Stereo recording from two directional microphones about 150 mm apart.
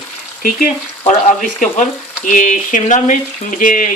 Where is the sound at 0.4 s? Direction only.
65° left (ahead or behind).